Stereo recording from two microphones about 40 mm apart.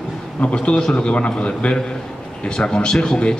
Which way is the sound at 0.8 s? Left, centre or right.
Centre.